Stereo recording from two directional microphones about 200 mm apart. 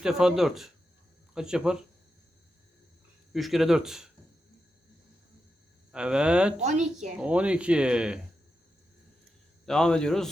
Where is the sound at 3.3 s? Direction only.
Centre (ahead or behind).